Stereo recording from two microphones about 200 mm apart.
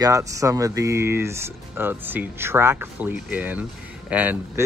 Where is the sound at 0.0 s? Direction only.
15° right (ahead or behind).